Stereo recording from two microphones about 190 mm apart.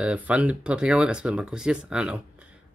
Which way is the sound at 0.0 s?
5° right (ahead or behind).